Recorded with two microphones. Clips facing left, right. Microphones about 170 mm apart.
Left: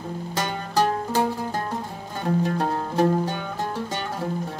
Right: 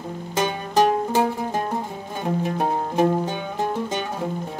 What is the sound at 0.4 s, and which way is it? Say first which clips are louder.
Music: right 4 dB; 20° right (ahead or behind).